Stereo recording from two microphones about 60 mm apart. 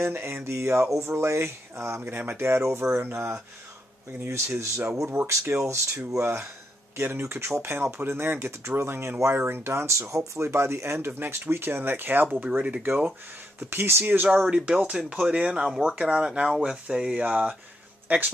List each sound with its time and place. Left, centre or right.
0.1 s speech: right
12.4 s speech: centre
13.6 s speech: right
14.0 s speech: right
14.4 s speech: centre
17.2 s speech: right